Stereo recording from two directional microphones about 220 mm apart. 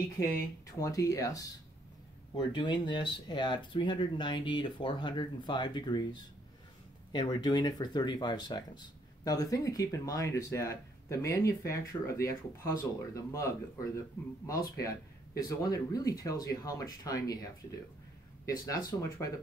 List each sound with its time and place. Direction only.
0.7 s speech: 15° left (ahead or behind)
14.6 s speech: 15° left (ahead or behind)